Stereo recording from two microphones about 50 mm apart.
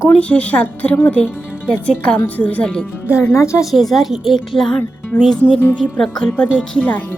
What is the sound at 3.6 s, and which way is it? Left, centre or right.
A woman's voice, centre.